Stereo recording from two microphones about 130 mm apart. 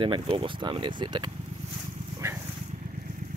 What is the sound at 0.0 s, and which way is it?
Speech, 40° right (ahead or behind).